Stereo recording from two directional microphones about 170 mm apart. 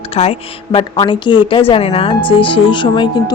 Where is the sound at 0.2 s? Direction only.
35° left (ahead or behind).